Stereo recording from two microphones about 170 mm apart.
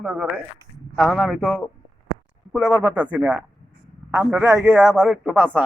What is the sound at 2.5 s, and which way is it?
Speech, 25° right (ahead or behind).